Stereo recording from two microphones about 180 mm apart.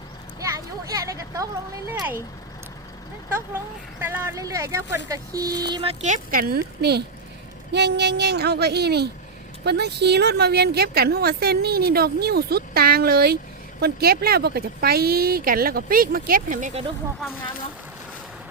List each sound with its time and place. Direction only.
0.3 s a sound: 20° right (ahead or behind)
1.9 s speech: 10° right (ahead or behind)
4.0 s a woman's voice: 15° right (ahead or behind); by 16.8 s 45° right (ahead or behind)